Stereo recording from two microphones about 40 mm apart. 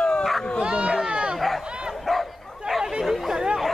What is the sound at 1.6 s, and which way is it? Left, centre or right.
Bow-wow, right.